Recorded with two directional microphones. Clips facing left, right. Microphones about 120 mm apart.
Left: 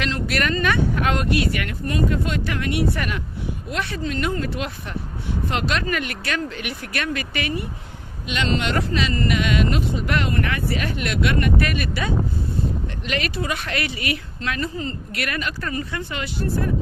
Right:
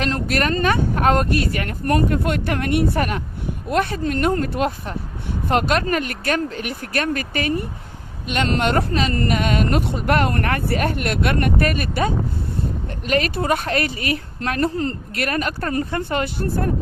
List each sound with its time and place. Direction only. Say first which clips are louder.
0.0 s speech: right 3 dB; 40° right (ahead or behind)
1.9 s speech: right 4 dB; 55° right (ahead or behind)
15.1 s speech: right 3 dB; 40° right (ahead or behind)